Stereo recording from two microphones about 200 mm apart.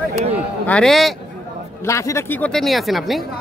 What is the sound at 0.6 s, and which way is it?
Speech, 5° left (ahead or behind).